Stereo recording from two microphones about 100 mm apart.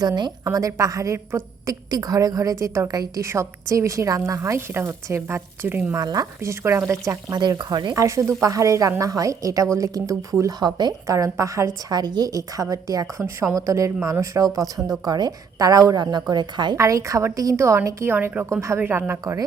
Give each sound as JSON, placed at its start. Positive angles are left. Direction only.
{"t": 0.0, "sound": "a woman's voice", "side_deg": -45}
{"t": 1.9, "sound": "a woman's voice", "side_deg": -40}
{"t": 6.0, "sound": "a woman's voice", "side_deg": -40}
{"t": 7.3, "sound": "speech", "side_deg": -45}
{"t": 7.9, "sound": "a woman's voice", "side_deg": -30}
{"t": 16.7, "sound": "a woman's voice", "side_deg": -30}
{"t": 19.2, "sound": "a woman's voice", "side_deg": -35}